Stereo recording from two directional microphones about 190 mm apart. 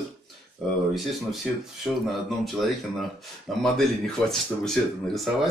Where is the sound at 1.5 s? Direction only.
Centre (ahead or behind).